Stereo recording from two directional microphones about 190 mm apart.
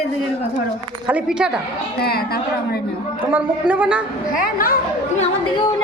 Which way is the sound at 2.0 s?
55° left (ahead or behind).